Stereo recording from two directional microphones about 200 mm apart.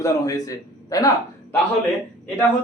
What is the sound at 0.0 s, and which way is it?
A man's voice, 20° left (ahead or behind).